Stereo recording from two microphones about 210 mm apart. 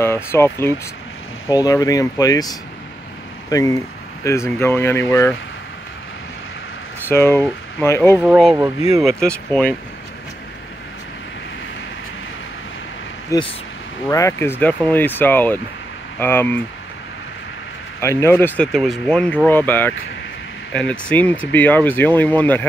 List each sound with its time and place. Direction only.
0.0 s speech: 10° left (ahead or behind)
7.1 s speech: 10° left (ahead or behind)
8.2 s speech: 5° right (ahead or behind)
13.3 s speech: 15° left (ahead or behind)
18.0 s speech: 10° left (ahead or behind)